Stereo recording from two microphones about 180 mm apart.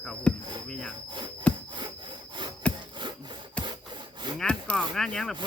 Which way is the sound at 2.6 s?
5° left (ahead or behind).